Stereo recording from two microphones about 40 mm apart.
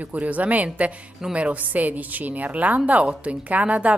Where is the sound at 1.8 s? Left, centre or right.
Right.